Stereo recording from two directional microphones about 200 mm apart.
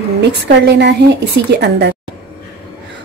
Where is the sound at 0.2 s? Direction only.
60° right (ahead or behind).